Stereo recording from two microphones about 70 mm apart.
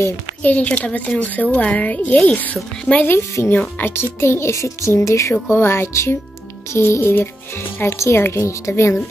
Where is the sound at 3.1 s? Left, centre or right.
Left.